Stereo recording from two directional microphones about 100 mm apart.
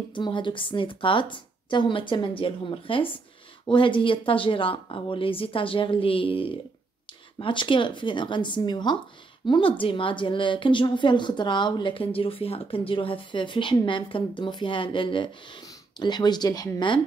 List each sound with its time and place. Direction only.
0.1 s a woman's voice: 55° left (ahead or behind)
9.5 s a woman's voice: 60° left (ahead or behind); by 16.8 s 35° left (ahead or behind)